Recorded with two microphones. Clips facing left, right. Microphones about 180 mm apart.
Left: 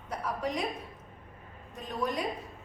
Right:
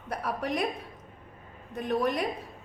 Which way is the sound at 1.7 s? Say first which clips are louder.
Right 6 dB; 65° right (ahead or behind).